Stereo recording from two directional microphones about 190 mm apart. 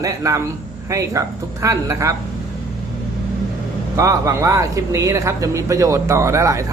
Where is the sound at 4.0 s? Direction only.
15° right (ahead or behind).